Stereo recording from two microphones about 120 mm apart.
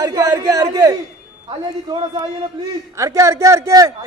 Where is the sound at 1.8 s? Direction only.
40° right (ahead or behind).